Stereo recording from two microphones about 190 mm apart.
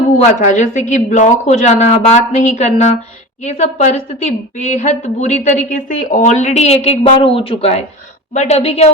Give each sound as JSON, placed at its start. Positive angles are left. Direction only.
{"t": 0.2, "sound": "a woman's voice", "side_deg": 40}